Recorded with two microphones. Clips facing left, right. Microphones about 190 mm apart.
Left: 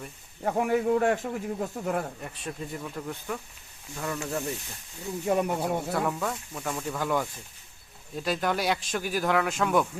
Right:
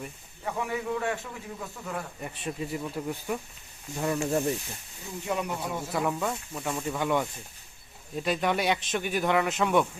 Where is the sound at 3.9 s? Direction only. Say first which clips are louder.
Right 5 dB; 25° right (ahead or behind).